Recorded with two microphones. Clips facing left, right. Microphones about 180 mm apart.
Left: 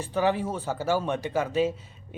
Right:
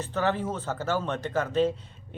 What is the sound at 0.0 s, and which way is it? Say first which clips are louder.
Speech: left 2 dB; 10° left (ahead or behind).